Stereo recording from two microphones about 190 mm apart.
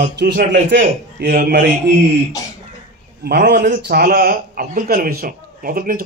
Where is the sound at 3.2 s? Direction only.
60° right (ahead or behind).